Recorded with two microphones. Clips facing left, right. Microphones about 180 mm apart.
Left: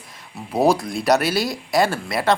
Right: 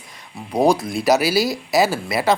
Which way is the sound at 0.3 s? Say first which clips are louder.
Right 1 dB; 5° left (ahead or behind).